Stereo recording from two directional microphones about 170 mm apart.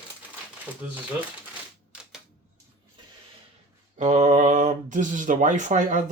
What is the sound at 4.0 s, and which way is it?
Speech, 45° right (ahead or behind).